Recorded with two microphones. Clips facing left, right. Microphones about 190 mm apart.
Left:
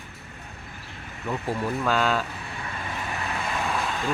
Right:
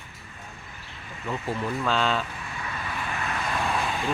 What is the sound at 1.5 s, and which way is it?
Speech, 5° left (ahead or behind).